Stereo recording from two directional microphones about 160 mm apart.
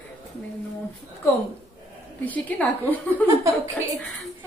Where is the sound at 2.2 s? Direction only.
10° left (ahead or behind).